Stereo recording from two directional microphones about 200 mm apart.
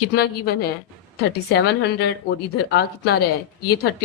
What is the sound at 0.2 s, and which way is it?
Speech, 50° left (ahead or behind).